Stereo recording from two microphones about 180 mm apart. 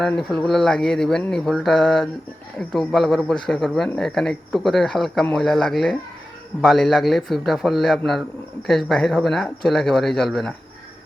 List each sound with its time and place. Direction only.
0.0 s speech: centre (ahead or behind)